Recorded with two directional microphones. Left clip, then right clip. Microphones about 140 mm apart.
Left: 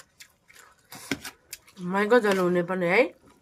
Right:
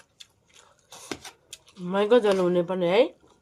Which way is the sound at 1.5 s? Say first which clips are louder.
Right 1 dB; 40° left (ahead or behind).